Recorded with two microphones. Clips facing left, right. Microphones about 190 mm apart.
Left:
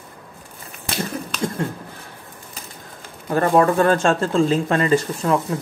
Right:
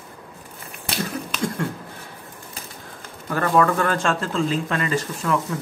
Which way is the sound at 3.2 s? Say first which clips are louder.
Left 3 dB; 25° left (ahead or behind).